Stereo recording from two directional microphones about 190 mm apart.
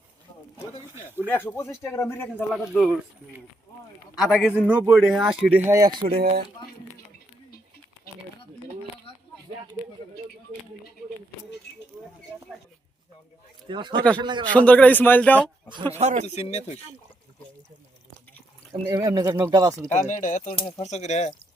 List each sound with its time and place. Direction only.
1.5 s a man's voice: 10° left (ahead or behind)
2.7 s a man's voice: centre (ahead or behind)
4.2 s a man's voice: 5° right (ahead or behind); by 6.3 s 30° right (ahead or behind)
13.7 s speech: 25° right (ahead or behind)
14.5 s a man's voice: 5° left (ahead or behind)
15.7 s speech: 25° right (ahead or behind)
16.2 s speech: 35° left (ahead or behind)
18.9 s speech: 20° right (ahead or behind)
19.9 s speech: 40° left (ahead or behind)